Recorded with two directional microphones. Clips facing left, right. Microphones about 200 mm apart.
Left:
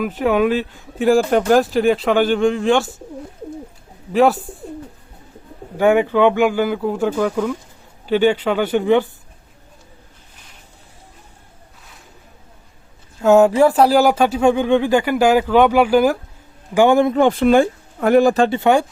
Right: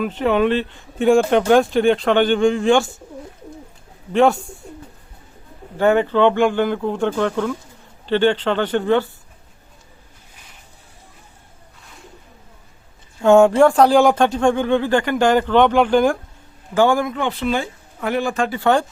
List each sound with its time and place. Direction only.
0.0 s speech: 5° left (ahead or behind)
4.1 s speech: 5° left (ahead or behind)
5.7 s speech: 10° left (ahead or behind)
13.2 s speech: 5° left (ahead or behind)
16.7 s a man's voice: 20° left (ahead or behind)
17.1 s speech: 45° left (ahead or behind)
18.4 s a man's voice: 25° left (ahead or behind)